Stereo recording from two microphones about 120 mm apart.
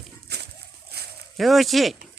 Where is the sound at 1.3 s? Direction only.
Centre (ahead or behind).